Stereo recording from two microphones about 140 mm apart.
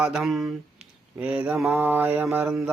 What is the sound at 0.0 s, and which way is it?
Speech, 5° right (ahead or behind).